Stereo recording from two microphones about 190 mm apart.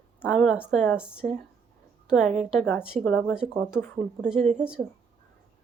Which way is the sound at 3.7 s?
10° left (ahead or behind).